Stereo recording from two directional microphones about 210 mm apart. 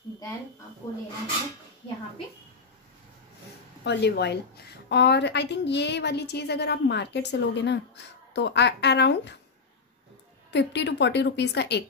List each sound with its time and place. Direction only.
0.8 s speech: 15° left (ahead or behind)
3.8 s a woman's voice: 55° left (ahead or behind)
10.5 s a woman's voice: 55° left (ahead or behind)